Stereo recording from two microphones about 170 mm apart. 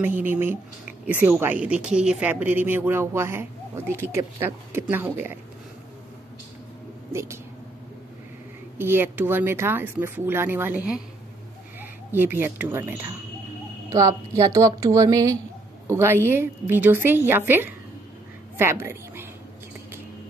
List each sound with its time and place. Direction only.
0.0 s a woman's voice: 10° right (ahead or behind)
7.1 s speech: 15° right (ahead or behind)
8.7 s a woman's voice: 10° right (ahead or behind)